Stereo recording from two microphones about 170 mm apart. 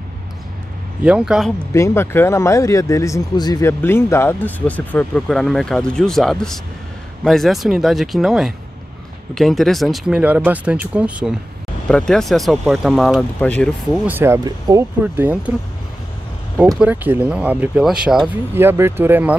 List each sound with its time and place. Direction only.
1.0 s speech: 5° right (ahead or behind)
1.7 s speech: 15° left (ahead or behind)
14.0 s speech: 15° right (ahead or behind)
16.5 s speech: 5° right (ahead or behind)